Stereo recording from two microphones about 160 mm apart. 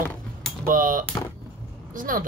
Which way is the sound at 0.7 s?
60° right (ahead or behind).